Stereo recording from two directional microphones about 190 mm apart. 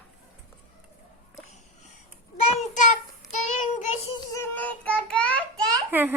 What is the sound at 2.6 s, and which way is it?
Child singing, 40° left (ahead or behind).